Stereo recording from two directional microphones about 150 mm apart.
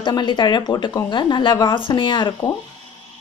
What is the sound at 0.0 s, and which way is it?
Speech, 30° left (ahead or behind).